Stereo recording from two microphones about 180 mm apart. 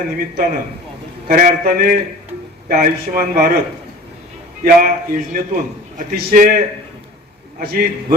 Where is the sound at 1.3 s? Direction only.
50° right (ahead or behind).